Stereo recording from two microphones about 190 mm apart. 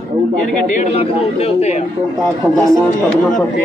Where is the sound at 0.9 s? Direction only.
35° left (ahead or behind).